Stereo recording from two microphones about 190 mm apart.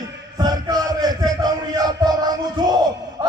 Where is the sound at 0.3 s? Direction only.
20° right (ahead or behind).